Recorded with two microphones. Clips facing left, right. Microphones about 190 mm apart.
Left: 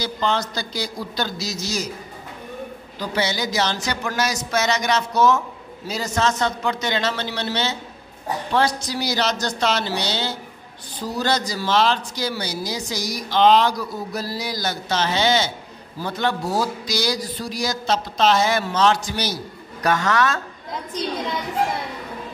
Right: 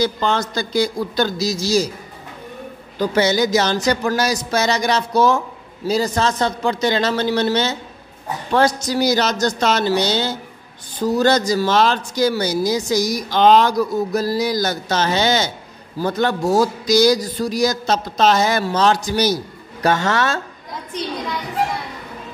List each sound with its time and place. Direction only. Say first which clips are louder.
0.0 s speech: right 4 dB; 50° right (ahead or behind)
1.5 s speech: right 9 dB; 30° right (ahead or behind)
3.0 s speech: right 8 dB; 45° right (ahead or behind)
19.8 s speech: right 2 dB; 30° right (ahead or behind)